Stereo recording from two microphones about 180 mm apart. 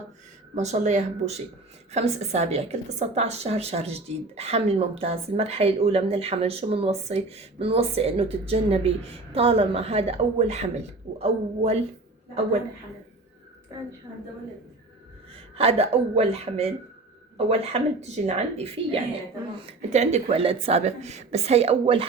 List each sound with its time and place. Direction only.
0.5 s a woman's voice: 40° right (ahead or behind)
15.5 s a woman's voice: 35° right (ahead or behind)